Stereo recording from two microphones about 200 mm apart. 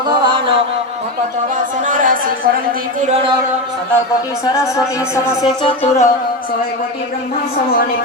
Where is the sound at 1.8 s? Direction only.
40° right (ahead or behind).